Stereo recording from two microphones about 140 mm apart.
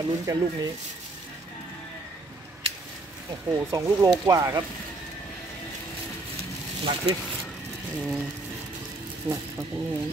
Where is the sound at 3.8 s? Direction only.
25° right (ahead or behind).